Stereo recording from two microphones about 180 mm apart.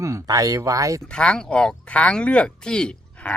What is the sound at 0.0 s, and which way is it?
Speech, 15° right (ahead or behind).